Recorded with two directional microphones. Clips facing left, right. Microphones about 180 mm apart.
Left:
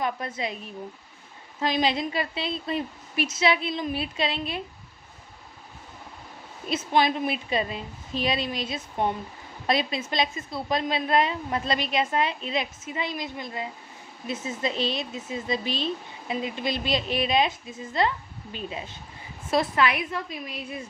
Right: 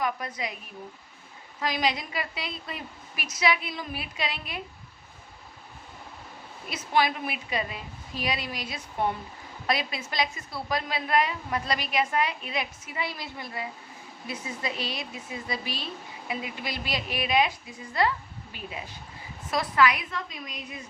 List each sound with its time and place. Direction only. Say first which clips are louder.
0.0 s a woman's voice: left 2 dB; 25° left (ahead or behind)
6.7 s a woman's voice: left 3 dB; 25° left (ahead or behind)